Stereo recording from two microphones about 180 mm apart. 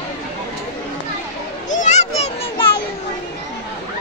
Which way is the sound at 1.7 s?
40° left (ahead or behind).